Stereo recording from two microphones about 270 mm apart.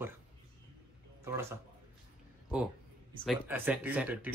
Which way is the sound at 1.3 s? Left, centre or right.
Centre.